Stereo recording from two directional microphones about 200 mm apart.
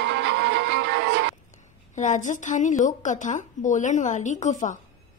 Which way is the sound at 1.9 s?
40° left (ahead or behind).